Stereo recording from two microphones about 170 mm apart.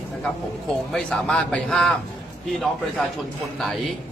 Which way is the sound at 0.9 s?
5° left (ahead or behind).